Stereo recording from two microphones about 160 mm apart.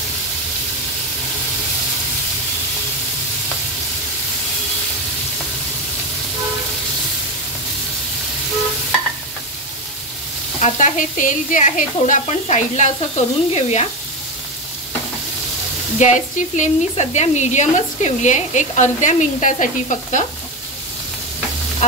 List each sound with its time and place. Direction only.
10.6 s speech: 55° left (ahead or behind)
16.0 s speech: 50° left (ahead or behind)